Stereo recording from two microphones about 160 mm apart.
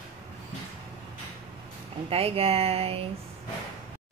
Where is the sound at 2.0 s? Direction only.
40° right (ahead or behind).